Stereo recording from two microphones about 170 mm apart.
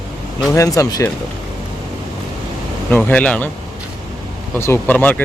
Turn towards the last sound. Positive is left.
turn(degrees=10)  # may be behind; listen again after turning